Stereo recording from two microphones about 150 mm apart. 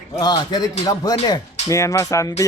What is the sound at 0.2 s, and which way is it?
A man's voice, 25° left (ahead or behind).